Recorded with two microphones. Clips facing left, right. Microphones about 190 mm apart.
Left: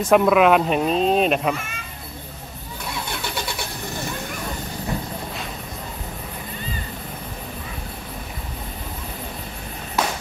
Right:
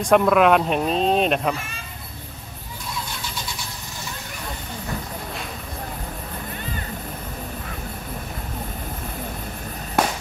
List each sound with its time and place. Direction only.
0.0 s speech: 5° left (ahead or behind)
2.9 s vehicle: 65° left (ahead or behind)
10.0 s a sound: 55° right (ahead or behind)